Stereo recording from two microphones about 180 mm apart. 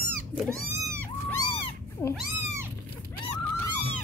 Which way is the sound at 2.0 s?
15° left (ahead or behind).